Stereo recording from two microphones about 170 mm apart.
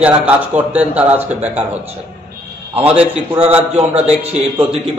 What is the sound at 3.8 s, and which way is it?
Speech, 40° right (ahead or behind).